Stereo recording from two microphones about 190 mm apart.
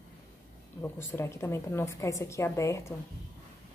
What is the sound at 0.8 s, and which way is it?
A woman's voice, 15° left (ahead or behind).